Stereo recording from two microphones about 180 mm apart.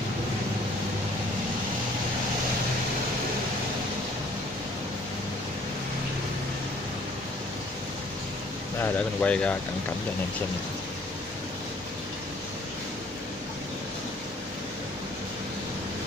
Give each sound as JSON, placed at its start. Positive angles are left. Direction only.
{"t": 8.8, "sound": "speech", "side_deg": 5}